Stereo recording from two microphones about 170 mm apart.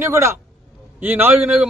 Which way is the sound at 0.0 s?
15° right (ahead or behind).